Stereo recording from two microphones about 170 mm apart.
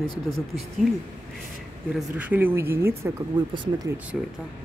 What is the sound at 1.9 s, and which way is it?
Speech, 10° right (ahead or behind).